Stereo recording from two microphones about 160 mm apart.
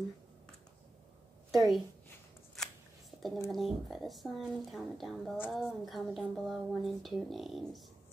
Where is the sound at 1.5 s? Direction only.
Centre (ahead or behind).